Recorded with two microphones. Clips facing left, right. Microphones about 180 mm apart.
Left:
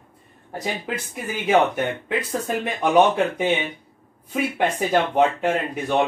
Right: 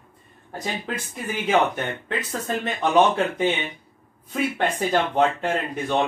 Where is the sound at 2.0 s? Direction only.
10° left (ahead or behind).